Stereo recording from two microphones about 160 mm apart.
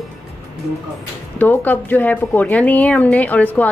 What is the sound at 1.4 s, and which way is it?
Speech, 10° left (ahead or behind).